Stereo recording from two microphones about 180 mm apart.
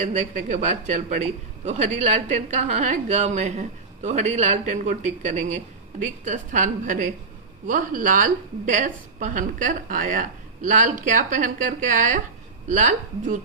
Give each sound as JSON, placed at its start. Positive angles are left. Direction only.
{"t": 0.0, "sound": "a man's voice", "side_deg": -40}